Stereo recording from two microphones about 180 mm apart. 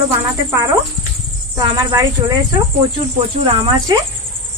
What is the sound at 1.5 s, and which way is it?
Speech, 20° right (ahead or behind).